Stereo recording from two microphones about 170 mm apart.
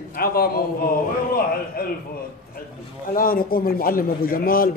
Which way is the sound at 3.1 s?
60° left (ahead or behind).